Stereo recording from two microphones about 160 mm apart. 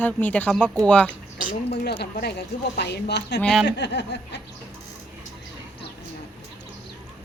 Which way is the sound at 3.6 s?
90° left.